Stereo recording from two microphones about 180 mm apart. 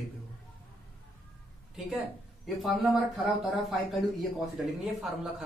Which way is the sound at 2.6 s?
Centre (ahead or behind).